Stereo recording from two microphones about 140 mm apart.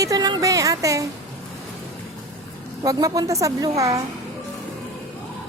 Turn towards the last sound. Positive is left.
turn(degrees=-25)  # may be behind; listen again after turning